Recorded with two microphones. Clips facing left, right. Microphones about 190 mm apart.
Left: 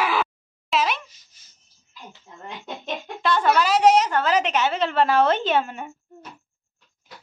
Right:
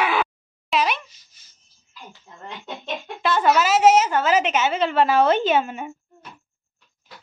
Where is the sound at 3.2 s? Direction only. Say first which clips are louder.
Right 1 dB; 5° right (ahead or behind).